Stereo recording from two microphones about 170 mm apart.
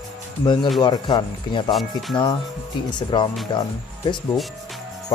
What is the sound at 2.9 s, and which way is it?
Speech, 25° left (ahead or behind).